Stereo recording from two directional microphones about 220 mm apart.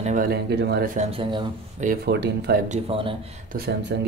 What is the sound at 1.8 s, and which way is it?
Speech, 45° right (ahead or behind).